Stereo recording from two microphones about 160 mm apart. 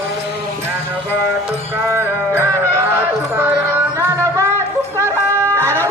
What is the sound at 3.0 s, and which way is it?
Music, 10° right (ahead or behind).